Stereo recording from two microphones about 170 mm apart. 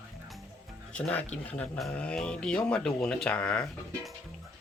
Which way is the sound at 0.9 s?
10° left (ahead or behind).